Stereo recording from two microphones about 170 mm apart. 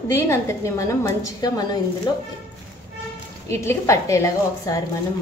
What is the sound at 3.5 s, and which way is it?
A woman's voice, 15° left (ahead or behind).